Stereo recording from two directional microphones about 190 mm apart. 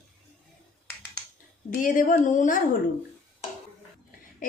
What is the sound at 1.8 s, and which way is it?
Speech, 45° left (ahead or behind).